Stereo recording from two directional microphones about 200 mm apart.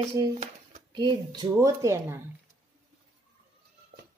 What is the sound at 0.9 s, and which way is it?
Speech, 20° right (ahead or behind).